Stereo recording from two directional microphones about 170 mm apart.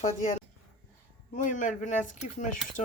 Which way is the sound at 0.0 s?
45° left (ahead or behind).